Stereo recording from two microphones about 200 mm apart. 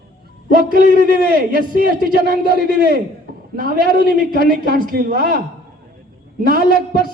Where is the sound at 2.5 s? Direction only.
50° left (ahead or behind).